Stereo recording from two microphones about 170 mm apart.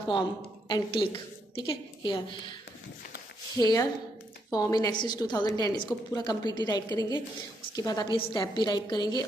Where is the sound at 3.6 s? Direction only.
20° left (ahead or behind).